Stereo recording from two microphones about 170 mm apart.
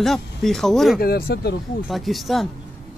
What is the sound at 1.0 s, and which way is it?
Speech, 65° left (ahead or behind).